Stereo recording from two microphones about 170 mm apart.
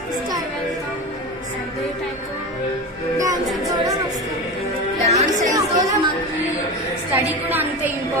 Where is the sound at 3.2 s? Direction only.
20° right (ahead or behind).